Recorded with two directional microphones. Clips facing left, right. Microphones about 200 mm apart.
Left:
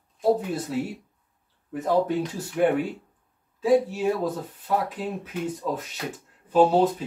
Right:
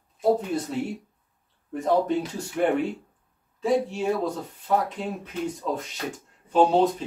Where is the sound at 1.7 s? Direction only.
5° left (ahead or behind).